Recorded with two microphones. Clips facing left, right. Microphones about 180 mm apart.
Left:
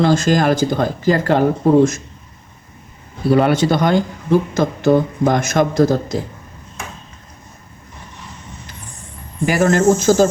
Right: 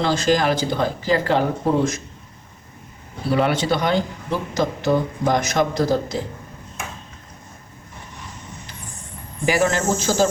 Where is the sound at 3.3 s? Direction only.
45° left (ahead or behind).